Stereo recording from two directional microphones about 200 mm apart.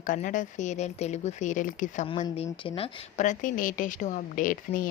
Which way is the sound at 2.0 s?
30° left (ahead or behind).